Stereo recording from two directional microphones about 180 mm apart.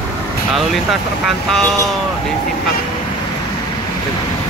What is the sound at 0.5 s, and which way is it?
Speech, centre (ahead or behind).